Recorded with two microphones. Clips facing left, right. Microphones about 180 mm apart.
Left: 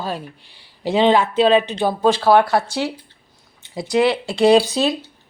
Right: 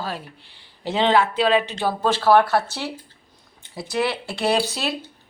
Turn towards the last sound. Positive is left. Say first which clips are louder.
# left 8 dB
turn(degrees=15)  # may be behind; listen again after turning